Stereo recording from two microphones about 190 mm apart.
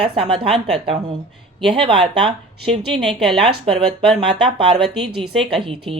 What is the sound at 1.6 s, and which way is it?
Speech, 25° right (ahead or behind).